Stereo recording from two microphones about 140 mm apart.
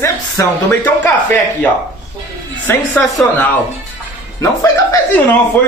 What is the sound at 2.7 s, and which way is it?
Speech, 15° left (ahead or behind).